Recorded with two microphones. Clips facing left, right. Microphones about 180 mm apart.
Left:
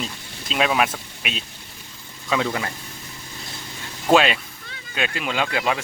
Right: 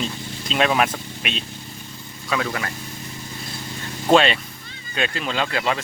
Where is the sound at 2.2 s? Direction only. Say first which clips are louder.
Left 2 dB; 20° left (ahead or behind).